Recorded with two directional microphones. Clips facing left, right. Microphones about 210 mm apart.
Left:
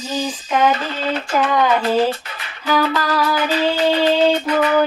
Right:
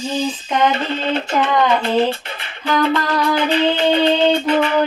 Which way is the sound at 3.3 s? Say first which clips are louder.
Right 2 dB; 25° right (ahead or behind).